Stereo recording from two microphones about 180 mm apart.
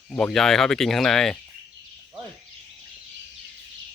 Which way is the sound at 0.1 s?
5° left (ahead or behind).